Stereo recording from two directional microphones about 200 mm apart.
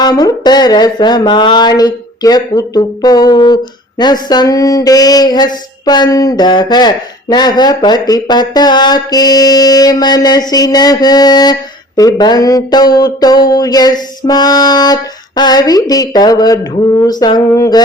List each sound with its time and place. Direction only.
0.0 s speech: 20° left (ahead or behind)